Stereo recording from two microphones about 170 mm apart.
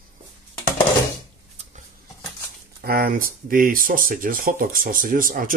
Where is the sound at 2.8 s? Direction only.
60° right (ahead or behind).